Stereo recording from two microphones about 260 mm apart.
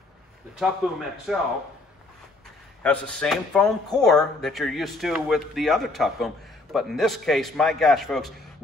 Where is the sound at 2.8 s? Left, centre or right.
Centre.